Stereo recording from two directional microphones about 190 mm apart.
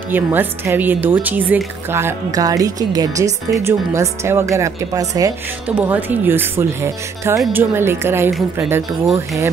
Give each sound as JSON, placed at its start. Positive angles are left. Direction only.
{"t": 0.1, "sound": "speech", "side_deg": -10}